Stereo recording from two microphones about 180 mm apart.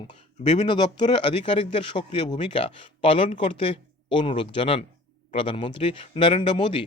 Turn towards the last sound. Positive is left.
turn(degrees=25)  # may be behind; listen again after turning